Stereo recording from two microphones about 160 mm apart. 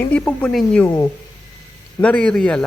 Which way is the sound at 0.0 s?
5° left (ahead or behind).